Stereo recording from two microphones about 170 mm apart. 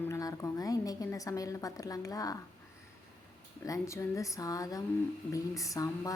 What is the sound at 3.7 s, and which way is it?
A woman's voice, 20° left (ahead or behind).